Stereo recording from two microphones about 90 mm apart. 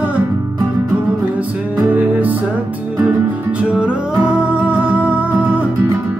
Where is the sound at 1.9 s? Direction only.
20° right (ahead or behind).